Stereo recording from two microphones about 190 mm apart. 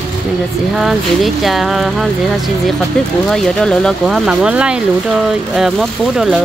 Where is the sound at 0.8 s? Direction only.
Centre (ahead or behind).